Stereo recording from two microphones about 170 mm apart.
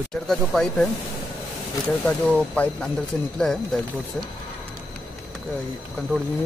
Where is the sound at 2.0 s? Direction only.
5° left (ahead or behind).